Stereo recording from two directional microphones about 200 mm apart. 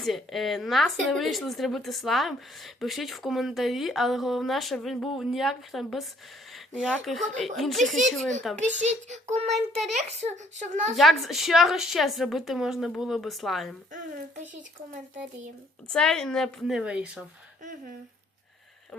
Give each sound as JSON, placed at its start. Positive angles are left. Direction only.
{"t": 0.0, "sound": "speech", "side_deg": 0}
{"t": 8.5, "sound": "a child's voice", "side_deg": -35}
{"t": 10.9, "sound": "speech", "side_deg": 0}
{"t": 15.9, "sound": "speech", "side_deg": 5}